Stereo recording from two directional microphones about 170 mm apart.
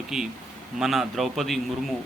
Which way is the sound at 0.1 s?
Centre (ahead or behind).